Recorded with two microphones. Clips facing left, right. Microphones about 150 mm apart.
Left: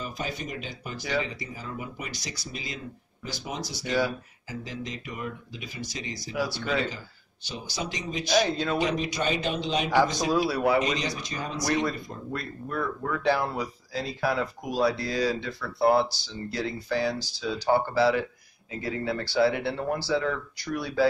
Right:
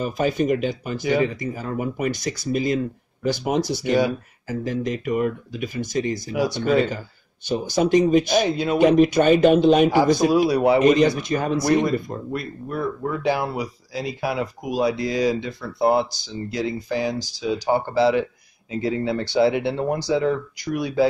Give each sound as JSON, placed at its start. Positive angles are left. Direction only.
{"t": 0.0, "sound": "a man's voice", "side_deg": -55}
{"t": 6.3, "sound": "speech", "side_deg": -20}
{"t": 6.6, "sound": "speech", "side_deg": -50}
{"t": 8.5, "sound": "speech", "side_deg": -15}
{"t": 8.7, "sound": "a man's voice", "side_deg": -55}
{"t": 9.8, "sound": "speech", "side_deg": -10}
{"t": 10.8, "sound": "a man's voice", "side_deg": -55}
{"t": 11.8, "sound": "speech", "side_deg": -15}